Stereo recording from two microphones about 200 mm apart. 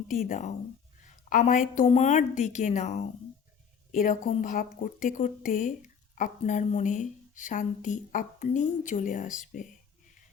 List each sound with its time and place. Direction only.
0.1 s speech: 45° left (ahead or behind)